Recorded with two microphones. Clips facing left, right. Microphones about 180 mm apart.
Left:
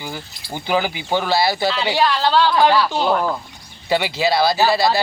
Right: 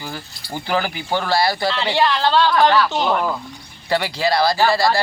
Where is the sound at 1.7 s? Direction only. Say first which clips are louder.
Even; 5° left (ahead or behind).